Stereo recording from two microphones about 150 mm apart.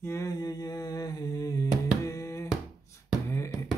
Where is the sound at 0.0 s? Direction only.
20° left (ahead or behind).